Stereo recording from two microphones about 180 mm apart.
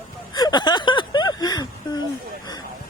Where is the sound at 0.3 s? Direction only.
25° left (ahead or behind).